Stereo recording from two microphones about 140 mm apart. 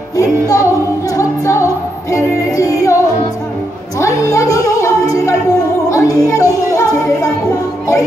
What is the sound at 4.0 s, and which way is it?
Music, 25° left (ahead or behind).